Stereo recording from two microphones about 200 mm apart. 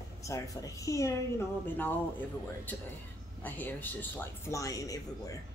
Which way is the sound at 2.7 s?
10° left (ahead or behind).